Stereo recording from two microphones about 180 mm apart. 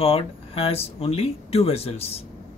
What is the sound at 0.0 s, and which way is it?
Speech, 30° left (ahead or behind).